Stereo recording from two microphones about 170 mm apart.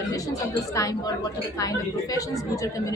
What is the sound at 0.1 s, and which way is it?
A woman's voice, 20° left (ahead or behind).